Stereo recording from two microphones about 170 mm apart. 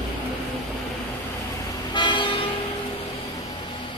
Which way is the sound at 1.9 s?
25° left (ahead or behind).